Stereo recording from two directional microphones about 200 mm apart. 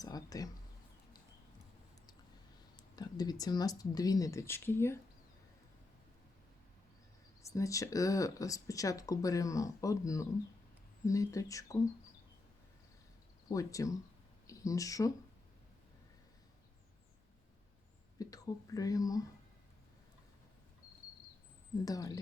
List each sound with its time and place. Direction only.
0.0 s speech: 20° left (ahead or behind)
2.9 s speech: 20° left (ahead or behind)
7.4 s speech: 15° left (ahead or behind)
13.5 s speech: 15° left (ahead or behind)
18.2 s speech: 20° left (ahead or behind)
21.8 s speech: 15° left (ahead or behind)